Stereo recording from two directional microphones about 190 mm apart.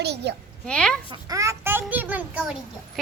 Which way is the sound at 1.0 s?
20° right (ahead or behind).